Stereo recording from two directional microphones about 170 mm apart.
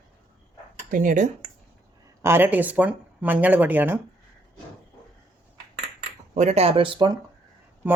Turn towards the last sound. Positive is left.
turn(degrees=-10)  # may be behind; listen again after turning